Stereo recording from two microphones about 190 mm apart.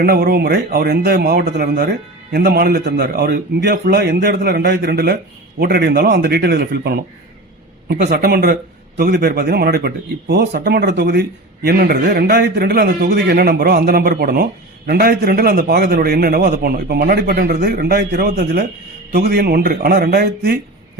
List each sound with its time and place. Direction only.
0.0 s speech: 55° right (ahead or behind)